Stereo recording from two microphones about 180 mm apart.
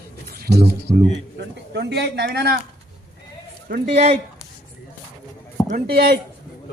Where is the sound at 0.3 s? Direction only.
60° right (ahead or behind).